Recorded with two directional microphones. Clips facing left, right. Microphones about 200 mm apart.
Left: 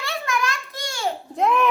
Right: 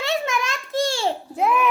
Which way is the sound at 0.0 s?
20° right (ahead or behind).